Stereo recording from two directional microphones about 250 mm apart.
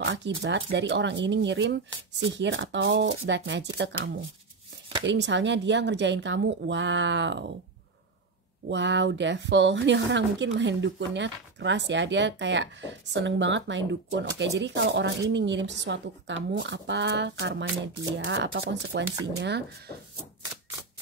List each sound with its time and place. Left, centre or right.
0.0 s speech: right
8.6 s speech: right